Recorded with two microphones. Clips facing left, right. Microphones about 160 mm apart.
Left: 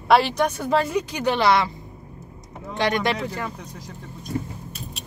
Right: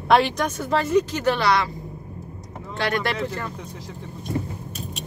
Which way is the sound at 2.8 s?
20° left (ahead or behind).